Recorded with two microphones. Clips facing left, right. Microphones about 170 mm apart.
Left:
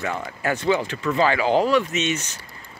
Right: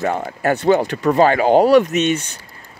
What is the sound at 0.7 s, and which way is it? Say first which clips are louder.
Speech: right 6 dB; 60° right (ahead or behind).